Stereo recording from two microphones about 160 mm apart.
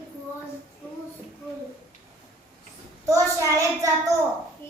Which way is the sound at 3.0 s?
20° right (ahead or behind).